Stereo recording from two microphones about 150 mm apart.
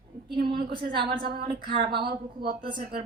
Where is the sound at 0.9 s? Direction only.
35° right (ahead or behind).